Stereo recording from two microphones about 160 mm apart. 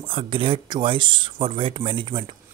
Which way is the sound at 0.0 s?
30° right (ahead or behind).